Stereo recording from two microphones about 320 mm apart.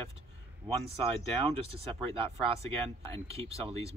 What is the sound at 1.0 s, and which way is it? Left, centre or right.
Speech, centre.